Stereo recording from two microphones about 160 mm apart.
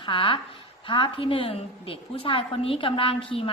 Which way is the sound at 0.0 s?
30° left (ahead or behind).